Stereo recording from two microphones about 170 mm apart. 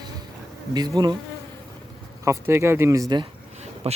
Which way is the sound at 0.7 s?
25° right (ahead or behind).